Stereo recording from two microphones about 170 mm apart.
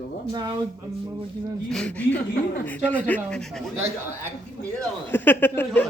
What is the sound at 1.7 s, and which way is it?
A man's voice, 10° left (ahead or behind).